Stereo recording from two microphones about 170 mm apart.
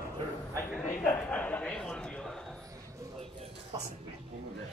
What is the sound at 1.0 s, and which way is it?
Speech, 10° left (ahead or behind).